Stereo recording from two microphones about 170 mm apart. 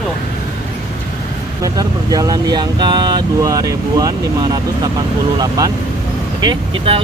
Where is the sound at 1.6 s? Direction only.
20° right (ahead or behind).